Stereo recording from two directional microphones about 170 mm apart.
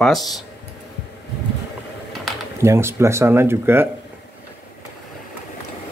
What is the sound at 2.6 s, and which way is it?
Speech, 15° right (ahead or behind).